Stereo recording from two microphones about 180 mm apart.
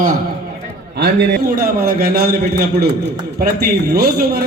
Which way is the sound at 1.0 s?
70° right (ahead or behind).